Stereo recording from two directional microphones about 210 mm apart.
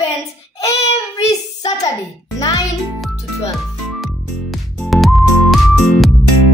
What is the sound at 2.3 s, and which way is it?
Music, 15° left (ahead or behind).